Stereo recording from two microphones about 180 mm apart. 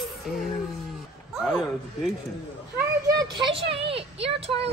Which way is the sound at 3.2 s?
25° right (ahead or behind).